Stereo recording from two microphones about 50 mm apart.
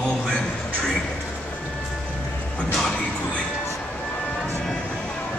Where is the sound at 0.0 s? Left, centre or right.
Centre.